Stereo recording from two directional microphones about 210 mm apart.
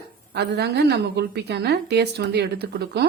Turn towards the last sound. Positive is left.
turn(degrees=-50)  # may be behind; listen again after turning